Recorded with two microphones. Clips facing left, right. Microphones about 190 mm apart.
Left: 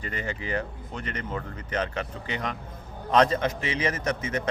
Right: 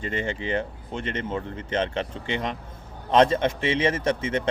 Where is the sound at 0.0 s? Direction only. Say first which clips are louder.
Right 5 dB; 25° right (ahead or behind).